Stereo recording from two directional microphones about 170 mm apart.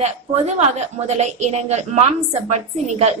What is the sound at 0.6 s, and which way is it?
A woman's voice, 40° right (ahead or behind).